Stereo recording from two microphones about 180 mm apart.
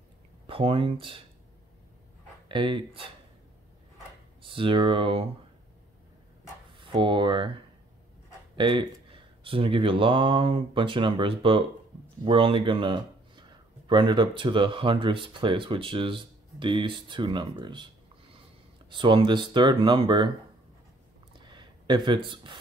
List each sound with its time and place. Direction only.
0.5 s speech: 30° right (ahead or behind)
2.4 s speech: 25° right (ahead or behind)
4.4 s speech: 30° right (ahead or behind)
6.8 s speech: 25° right (ahead or behind)
8.5 s speech: 25° right (ahead or behind)
18.9 s speech: 25° right (ahead or behind)
21.4 s a sound: 25° right (ahead or behind)